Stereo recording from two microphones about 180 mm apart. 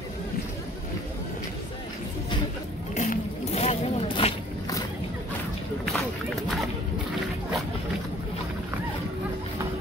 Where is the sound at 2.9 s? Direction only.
45° left (ahead or behind); by 4.8 s 25° left (ahead or behind).